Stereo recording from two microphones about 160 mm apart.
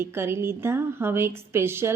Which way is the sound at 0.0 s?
15° right (ahead or behind).